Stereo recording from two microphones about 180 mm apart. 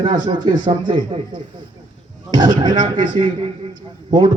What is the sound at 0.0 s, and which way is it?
A man's voice, 25° right (ahead or behind).